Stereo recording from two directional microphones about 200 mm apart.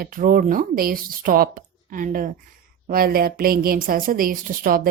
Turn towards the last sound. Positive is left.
turn(degrees=-45)  # may be behind; listen again after turning